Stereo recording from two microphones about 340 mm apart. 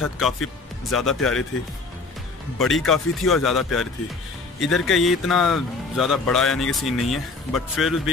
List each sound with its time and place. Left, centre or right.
0.0 s speech: centre
2.8 s speech: centre